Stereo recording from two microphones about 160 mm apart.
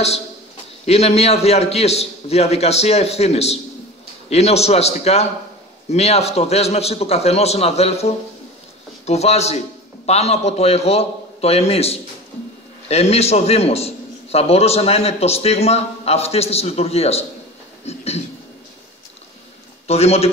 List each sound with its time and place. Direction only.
0.8 s a man's voice: 40° left (ahead or behind)
19.9 s a man's voice: 40° left (ahead or behind)